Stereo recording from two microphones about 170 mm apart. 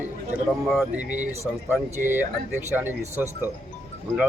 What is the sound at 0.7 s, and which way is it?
Speech, 5° right (ahead or behind).